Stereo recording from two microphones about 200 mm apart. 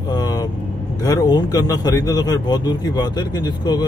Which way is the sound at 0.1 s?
20° left (ahead or behind).